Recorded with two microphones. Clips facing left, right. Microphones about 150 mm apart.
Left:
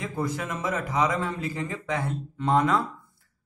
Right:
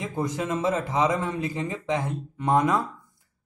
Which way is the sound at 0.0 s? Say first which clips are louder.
Right 2 dB; 20° right (ahead or behind).